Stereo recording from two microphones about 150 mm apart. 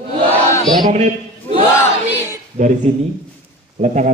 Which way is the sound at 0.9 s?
50° right (ahead or behind).